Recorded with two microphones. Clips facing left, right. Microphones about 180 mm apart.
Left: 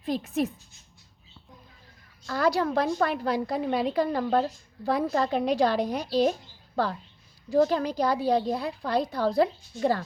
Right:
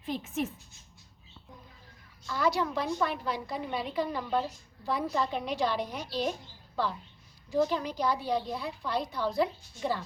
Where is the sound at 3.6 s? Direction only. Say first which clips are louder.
Left 8 dB; 75° left (ahead or behind).